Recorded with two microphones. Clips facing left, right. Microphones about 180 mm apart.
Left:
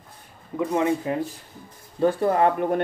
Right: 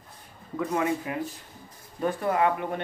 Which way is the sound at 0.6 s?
25° left (ahead or behind).